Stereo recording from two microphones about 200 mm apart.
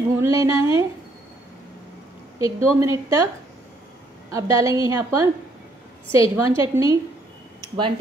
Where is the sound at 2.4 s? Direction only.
15° right (ahead or behind).